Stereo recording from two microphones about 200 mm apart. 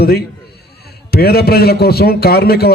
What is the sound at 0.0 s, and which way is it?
A man's voice, 50° left (ahead or behind).